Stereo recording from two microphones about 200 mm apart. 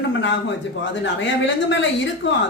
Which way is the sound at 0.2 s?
65° left (ahead or behind).